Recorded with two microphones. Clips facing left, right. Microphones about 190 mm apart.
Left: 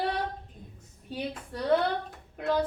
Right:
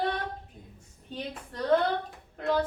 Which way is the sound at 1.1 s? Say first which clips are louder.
Left 3 dB; 10° left (ahead or behind).